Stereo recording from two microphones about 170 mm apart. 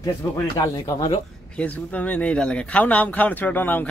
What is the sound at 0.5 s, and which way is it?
Speech, 20° left (ahead or behind).